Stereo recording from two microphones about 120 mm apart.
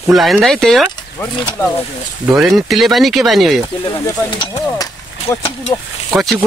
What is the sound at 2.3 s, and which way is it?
Speech, 5° right (ahead or behind).